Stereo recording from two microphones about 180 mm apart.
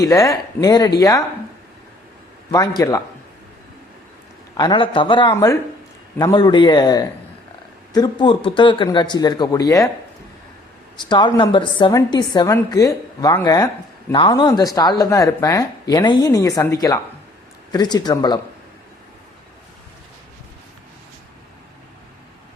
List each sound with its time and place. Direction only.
0.0 s speech: 20° left (ahead or behind)
2.5 s speech: 20° left (ahead or behind)
4.5 s speech: 25° left (ahead or behind)
10.9 s speech: 25° left (ahead or behind)